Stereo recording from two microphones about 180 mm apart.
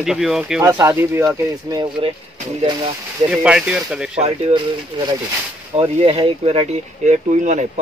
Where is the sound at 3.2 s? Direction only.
5° right (ahead or behind).